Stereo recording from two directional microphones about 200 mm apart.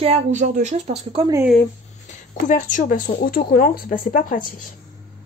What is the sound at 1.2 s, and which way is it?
Speech, 15° right (ahead or behind).